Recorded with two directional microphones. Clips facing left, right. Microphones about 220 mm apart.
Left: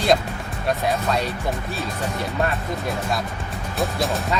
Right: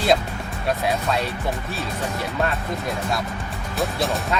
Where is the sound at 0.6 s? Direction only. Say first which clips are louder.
Left 1 dB; centre (ahead or behind).